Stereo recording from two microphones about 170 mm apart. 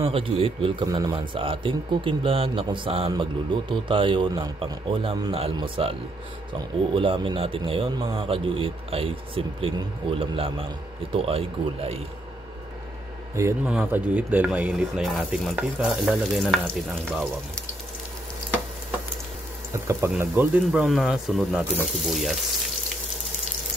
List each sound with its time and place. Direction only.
0.0 s a man's voice: 35° right (ahead or behind)
13.7 s speech: 5° right (ahead or behind)
19.7 s speech: 15° right (ahead or behind); by 22.8 s centre (ahead or behind)